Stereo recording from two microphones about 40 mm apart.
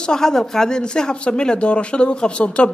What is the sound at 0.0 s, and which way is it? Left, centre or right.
Speech, centre.